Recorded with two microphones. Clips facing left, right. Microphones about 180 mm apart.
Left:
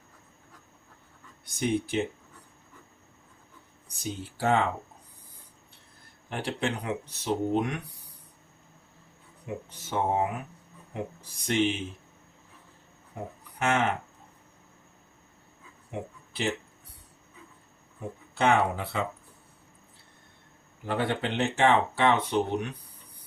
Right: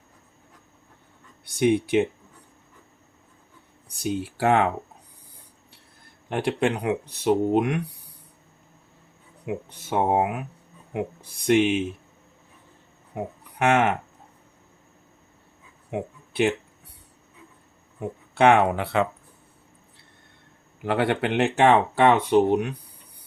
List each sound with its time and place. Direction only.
1.5 s speech: 70° right (ahead or behind)
4.0 s speech: 70° right (ahead or behind)
6.3 s speech: 65° right (ahead or behind)
9.5 s speech: 65° right (ahead or behind)
13.6 s speech: 70° right (ahead or behind)
15.9 s a sound: 60° right (ahead or behind)
18.3 s speech: 65° right (ahead or behind)
20.8 s speech: 75° right (ahead or behind)